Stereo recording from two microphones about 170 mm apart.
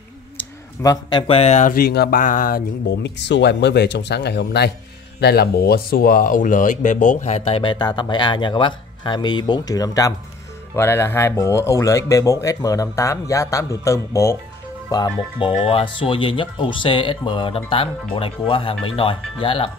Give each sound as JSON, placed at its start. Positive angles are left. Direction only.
{"t": 0.8, "sound": "speech", "side_deg": 30}
{"t": 1.7, "sound": "speech", "side_deg": 65}
{"t": 3.0, "sound": "speech", "side_deg": 90}